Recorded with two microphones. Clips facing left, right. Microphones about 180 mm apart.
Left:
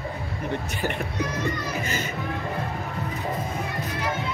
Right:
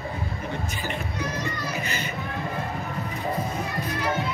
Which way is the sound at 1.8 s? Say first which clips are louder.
Left 2 dB; 45° left (ahead or behind).